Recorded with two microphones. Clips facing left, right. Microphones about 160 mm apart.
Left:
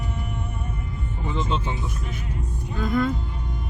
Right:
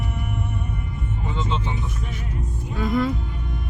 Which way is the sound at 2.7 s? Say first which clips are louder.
Right 1 dB; 5° right (ahead or behind).